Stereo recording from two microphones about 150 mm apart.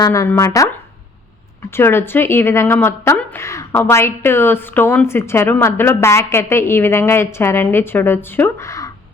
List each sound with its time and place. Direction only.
0.0 s speech: 20° left (ahead or behind)
1.7 s a woman's voice: 15° left (ahead or behind)